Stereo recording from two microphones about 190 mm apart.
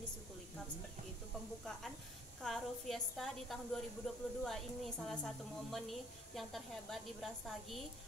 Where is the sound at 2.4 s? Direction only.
Centre (ahead or behind).